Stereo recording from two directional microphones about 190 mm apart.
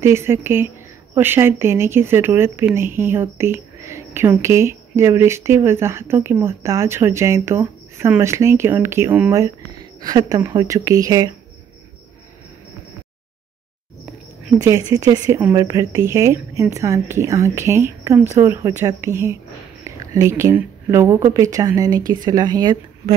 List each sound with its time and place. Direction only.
0.0 s speech: 15° right (ahead or behind)
14.9 s speech: 20° right (ahead or behind)